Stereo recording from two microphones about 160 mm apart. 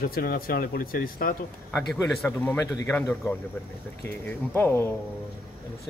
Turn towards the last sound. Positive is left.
turn(degrees=15)  # may be behind; listen again after turning